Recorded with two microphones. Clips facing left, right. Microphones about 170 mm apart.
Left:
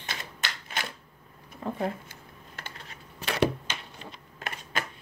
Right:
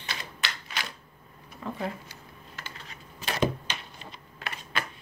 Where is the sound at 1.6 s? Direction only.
50° left (ahead or behind); by 3.5 s 65° left (ahead or behind).